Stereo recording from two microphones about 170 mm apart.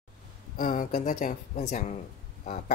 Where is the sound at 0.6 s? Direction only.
55° left (ahead or behind).